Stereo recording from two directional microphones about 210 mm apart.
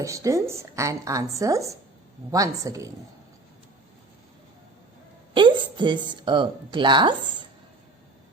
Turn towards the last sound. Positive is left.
turn(degrees=-20)  # may be behind; listen again after turning